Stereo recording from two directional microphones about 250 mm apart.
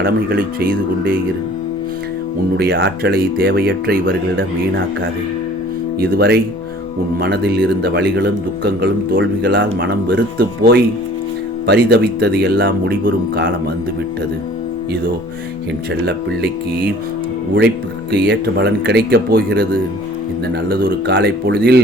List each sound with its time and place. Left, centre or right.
0.0 s speech: right
2.6 s speech: right
6.0 s speech: right
18.1 s speech: right
20.7 s speech: right